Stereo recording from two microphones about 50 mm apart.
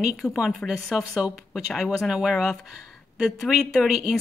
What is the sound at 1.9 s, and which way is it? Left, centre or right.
A woman's voice, centre.